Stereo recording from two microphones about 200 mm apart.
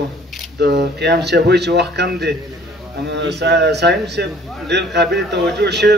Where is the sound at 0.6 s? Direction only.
55° right (ahead or behind).